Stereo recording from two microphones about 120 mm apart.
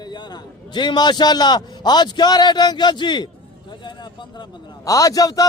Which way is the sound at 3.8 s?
40° left (ahead or behind).